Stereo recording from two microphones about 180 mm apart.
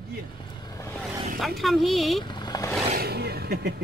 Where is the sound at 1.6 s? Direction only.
Centre (ahead or behind).